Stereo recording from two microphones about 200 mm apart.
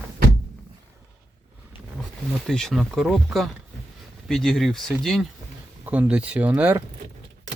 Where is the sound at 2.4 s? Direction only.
Centre (ahead or behind).